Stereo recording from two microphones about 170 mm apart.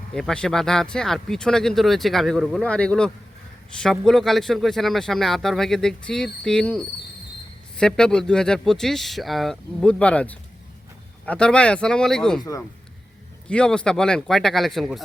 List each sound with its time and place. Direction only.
0.1 s a man's voice: 5° left (ahead or behind)
13.5 s a man's voice: 5° left (ahead or behind)